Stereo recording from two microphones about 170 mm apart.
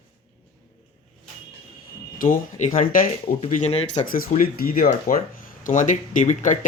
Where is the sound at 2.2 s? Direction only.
50° left (ahead or behind).